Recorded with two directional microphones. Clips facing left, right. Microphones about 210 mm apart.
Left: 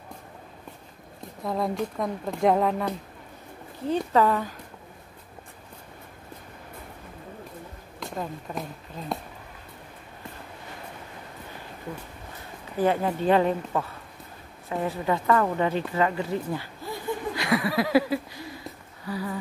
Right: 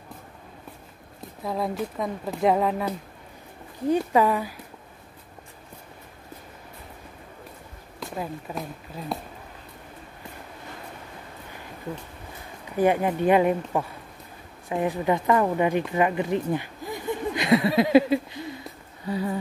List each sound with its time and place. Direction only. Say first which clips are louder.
1.4 s speech: even; centre (ahead or behind)
3.9 s speech: right 1 dB; 10° right (ahead or behind)
8.2 s speech: right 1 dB; 5° right (ahead or behind)
12.7 s speech: right 2 dB; 15° right (ahead or behind)